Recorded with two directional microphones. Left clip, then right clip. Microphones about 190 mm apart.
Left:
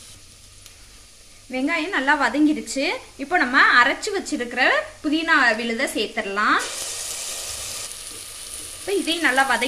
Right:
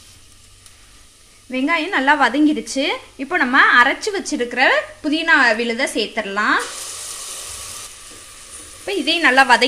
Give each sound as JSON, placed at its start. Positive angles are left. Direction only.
{"t": 1.5, "sound": "speech", "side_deg": -45}
{"t": 8.8, "sound": "speech", "side_deg": -45}